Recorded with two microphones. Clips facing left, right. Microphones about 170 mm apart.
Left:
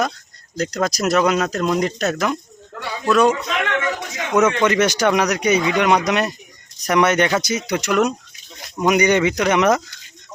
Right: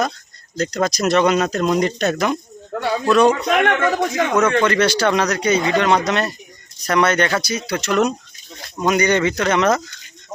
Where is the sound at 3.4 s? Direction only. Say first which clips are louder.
Right 5 dB; 55° right (ahead or behind).